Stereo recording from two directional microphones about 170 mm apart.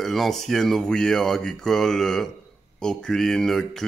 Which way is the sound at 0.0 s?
Centre (ahead or behind).